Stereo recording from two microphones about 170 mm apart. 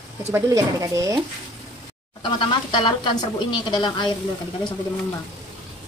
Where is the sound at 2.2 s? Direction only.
30° left (ahead or behind).